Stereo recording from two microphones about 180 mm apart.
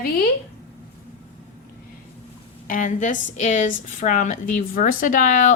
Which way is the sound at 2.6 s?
45° left (ahead or behind).